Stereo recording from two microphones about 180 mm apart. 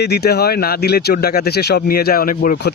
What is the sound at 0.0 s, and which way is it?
Speech, 65° left (ahead or behind).